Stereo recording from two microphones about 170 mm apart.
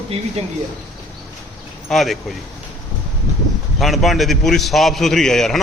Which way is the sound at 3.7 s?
Centre (ahead or behind).